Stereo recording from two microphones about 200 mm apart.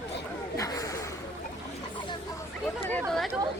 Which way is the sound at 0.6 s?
15° left (ahead or behind).